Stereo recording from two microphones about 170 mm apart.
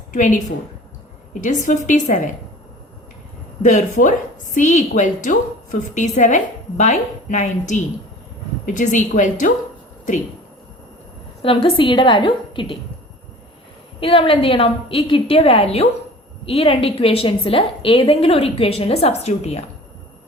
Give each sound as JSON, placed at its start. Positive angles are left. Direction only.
{"t": 0.1, "sound": "a woman's voice", "side_deg": 45}
{"t": 3.6, "sound": "a woman's voice", "side_deg": 50}
{"t": 11.4, "sound": "a woman's voice", "side_deg": 30}
{"t": 14.0, "sound": "a woman's voice", "side_deg": 30}